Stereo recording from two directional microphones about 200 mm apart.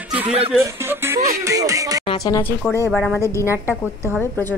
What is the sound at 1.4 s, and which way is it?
Speech, 15° right (ahead or behind).